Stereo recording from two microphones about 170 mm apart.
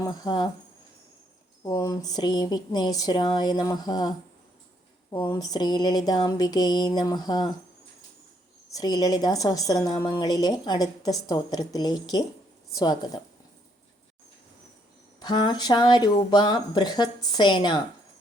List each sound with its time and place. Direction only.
0.0 s speech: 25° left (ahead or behind)
1.6 s a woman's voice: 20° left (ahead or behind)
5.1 s a woman's voice: 20° left (ahead or behind)
8.7 s a woman's voice: 20° left (ahead or behind)
15.2 s a woman's voice: 30° left (ahead or behind)